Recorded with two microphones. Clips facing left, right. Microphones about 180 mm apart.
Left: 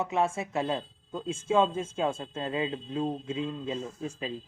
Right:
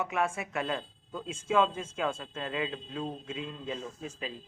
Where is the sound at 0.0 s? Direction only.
25° left (ahead or behind).